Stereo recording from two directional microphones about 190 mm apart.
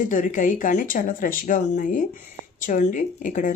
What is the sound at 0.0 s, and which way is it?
Speech, 45° left (ahead or behind).